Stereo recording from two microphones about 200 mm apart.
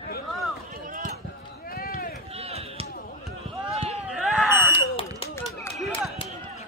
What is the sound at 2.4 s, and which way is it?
Basketball bounce, 30° right (ahead or behind).